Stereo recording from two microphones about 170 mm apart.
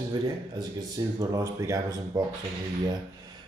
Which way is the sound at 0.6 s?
20° right (ahead or behind).